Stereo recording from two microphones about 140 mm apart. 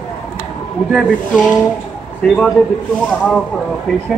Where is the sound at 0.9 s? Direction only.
Centre (ahead or behind).